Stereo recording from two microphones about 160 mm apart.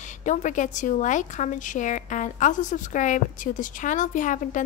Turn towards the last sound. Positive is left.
turn(degrees=50)  # may be behind; listen again after turning